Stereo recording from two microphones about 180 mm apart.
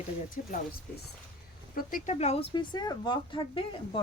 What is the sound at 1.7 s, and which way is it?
Speech, 45° left (ahead or behind).